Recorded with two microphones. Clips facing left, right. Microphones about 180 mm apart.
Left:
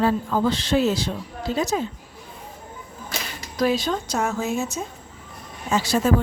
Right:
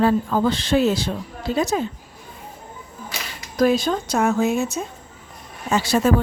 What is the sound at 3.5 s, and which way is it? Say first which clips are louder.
Speech: right 4 dB; 50° right (ahead or behind).